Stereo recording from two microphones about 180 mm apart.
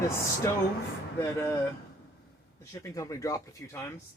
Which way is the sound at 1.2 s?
15° left (ahead or behind).